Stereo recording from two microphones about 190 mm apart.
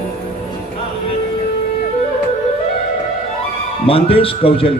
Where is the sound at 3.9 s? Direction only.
30° left (ahead or behind).